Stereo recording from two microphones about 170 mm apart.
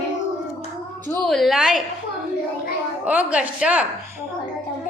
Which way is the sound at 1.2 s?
Centre (ahead or behind).